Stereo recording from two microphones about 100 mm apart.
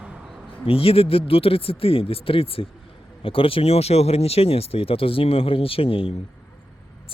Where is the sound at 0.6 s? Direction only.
70° left (ahead or behind).